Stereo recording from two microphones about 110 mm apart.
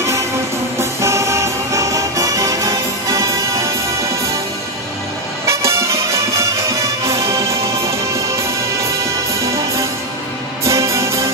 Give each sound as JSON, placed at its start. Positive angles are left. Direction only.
{"t": 0.7, "sound": "music", "side_deg": -25}
{"t": 5.5, "sound": "music", "side_deg": -25}